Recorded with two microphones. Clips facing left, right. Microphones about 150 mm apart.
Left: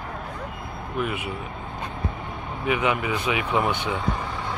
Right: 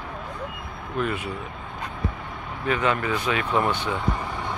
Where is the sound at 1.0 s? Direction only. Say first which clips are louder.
Right 2 dB; 15° left (ahead or behind).